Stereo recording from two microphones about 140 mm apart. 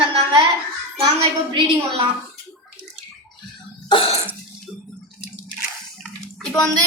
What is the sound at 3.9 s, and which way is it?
Cough, 45° left (ahead or behind).